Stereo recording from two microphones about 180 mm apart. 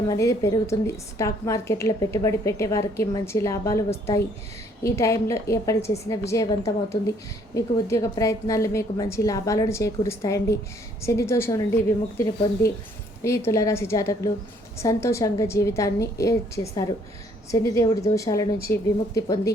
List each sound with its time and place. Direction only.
0.1 s a woman's voice: 15° left (ahead or behind)
17.5 s a woman's voice: 15° left (ahead or behind)